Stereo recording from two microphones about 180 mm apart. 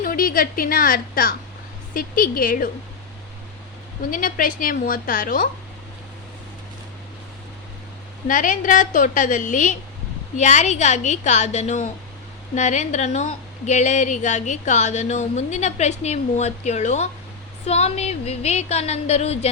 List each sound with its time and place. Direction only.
0.0 s a woman's voice: 50° left (ahead or behind)
4.1 s a woman's voice: 50° left (ahead or behind)
8.3 s a woman's voice: 45° left (ahead or behind)